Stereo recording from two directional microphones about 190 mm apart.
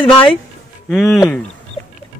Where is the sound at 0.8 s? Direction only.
Centre (ahead or behind).